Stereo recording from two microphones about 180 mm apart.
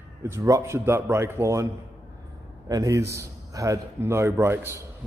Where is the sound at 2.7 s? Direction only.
20° right (ahead or behind).